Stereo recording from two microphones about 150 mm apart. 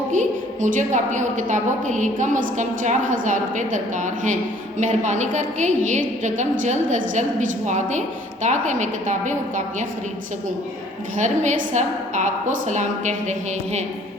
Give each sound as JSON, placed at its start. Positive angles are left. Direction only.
{"t": 0.1, "sound": "a woman's voice", "side_deg": -55}
{"t": 11.2, "sound": "a woman's voice", "side_deg": -55}